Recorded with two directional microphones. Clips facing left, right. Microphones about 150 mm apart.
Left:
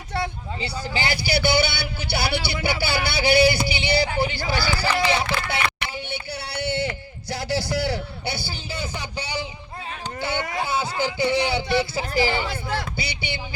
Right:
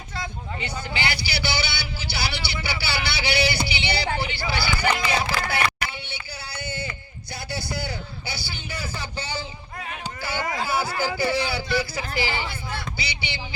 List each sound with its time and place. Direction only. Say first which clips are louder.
0.1 s vehicle: left 7 dB; 65° left (ahead or behind)
0.6 s a man's voice: left 2 dB; 35° left (ahead or behind)
5.3 s speech: even; 25° left (ahead or behind)
6.1 s a sound: left 6 dB; 70° left (ahead or behind)
8.5 s speech: left 2 dB; 25° left (ahead or behind)
12.1 s a man's voice: left 6 dB; 45° left (ahead or behind)